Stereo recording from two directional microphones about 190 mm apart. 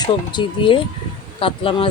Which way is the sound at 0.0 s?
25° left (ahead or behind).